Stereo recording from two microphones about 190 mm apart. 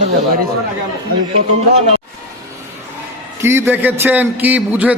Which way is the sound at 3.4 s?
15° right (ahead or behind).